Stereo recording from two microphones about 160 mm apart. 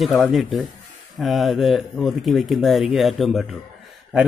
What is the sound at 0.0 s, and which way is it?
A man's voice, centre (ahead or behind).